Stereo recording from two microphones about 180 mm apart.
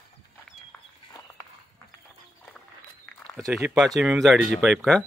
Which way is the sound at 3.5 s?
Centre (ahead or behind).